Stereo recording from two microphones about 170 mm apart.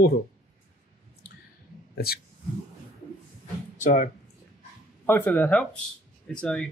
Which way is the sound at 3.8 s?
45° left (ahead or behind).